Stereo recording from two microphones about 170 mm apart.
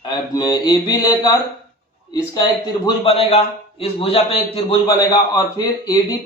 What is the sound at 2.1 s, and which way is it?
A man's voice, 25° left (ahead or behind).